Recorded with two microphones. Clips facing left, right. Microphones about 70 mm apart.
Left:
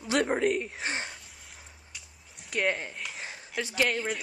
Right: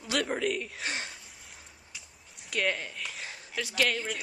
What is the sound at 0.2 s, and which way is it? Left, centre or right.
Speech, left.